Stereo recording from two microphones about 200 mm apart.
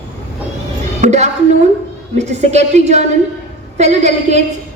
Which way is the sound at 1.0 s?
35° right (ahead or behind).